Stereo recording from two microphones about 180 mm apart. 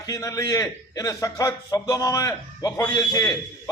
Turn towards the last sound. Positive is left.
turn(degrees=20)  # may be behind; listen again after turning